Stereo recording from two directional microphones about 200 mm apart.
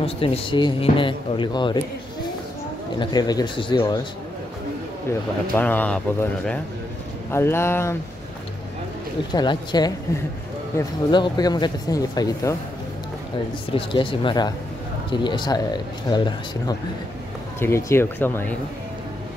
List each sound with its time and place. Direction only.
0.0 s speech: 30° left (ahead or behind)
3.0 s speech: 20° left (ahead or behind)
5.6 s speech: 10° left (ahead or behind)
9.3 s speech: 20° left (ahead or behind)
11.1 s speech: 20° left (ahead or behind)
13.7 s speech: 25° left (ahead or behind)